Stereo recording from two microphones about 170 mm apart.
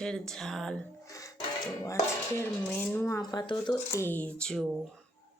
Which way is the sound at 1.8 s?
15° left (ahead or behind).